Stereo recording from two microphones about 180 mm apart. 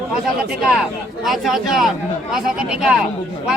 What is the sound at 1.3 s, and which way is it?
Speech, centre (ahead or behind).